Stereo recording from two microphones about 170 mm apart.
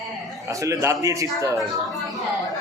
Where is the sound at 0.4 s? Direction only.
20° right (ahead or behind).